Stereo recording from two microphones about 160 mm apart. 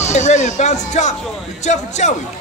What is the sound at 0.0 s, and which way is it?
A man's voice, 45° left (ahead or behind).